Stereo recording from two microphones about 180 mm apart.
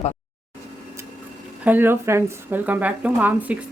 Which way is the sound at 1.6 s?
10° right (ahead or behind).